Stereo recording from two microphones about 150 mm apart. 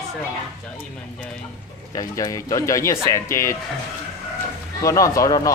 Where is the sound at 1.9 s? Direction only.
25° left (ahead or behind).